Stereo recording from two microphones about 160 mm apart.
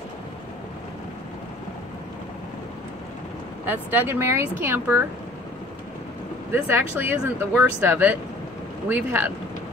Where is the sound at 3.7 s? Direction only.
15° right (ahead or behind).